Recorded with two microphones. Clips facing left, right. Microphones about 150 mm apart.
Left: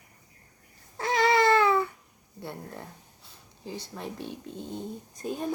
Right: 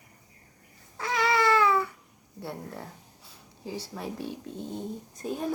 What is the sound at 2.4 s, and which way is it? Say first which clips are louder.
Speech: right 1 dB; 5° right (ahead or behind).